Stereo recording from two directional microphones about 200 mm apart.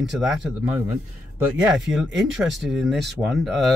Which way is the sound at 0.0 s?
Centre (ahead or behind).